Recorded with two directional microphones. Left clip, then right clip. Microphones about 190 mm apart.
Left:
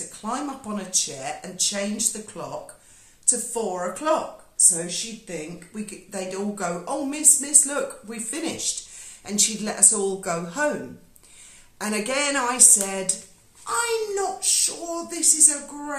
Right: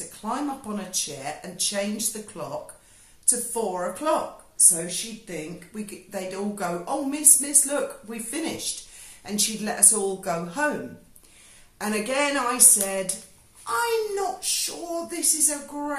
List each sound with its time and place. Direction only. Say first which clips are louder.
0.1 s speech: right 1 dB; 15° left (ahead or behind)
11.8 s speech: even; 15° left (ahead or behind)